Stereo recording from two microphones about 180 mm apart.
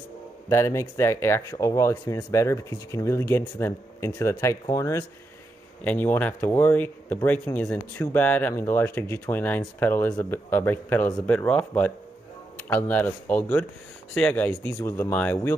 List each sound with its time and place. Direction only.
0.5 s speech: 15° left (ahead or behind)